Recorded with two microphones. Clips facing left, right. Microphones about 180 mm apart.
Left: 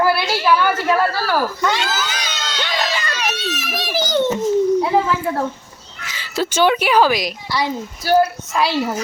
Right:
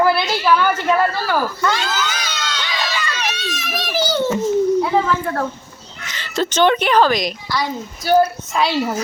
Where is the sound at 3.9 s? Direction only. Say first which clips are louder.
Left 1 dB; 10° left (ahead or behind).